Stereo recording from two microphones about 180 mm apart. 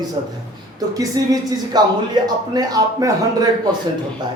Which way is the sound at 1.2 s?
25° right (ahead or behind).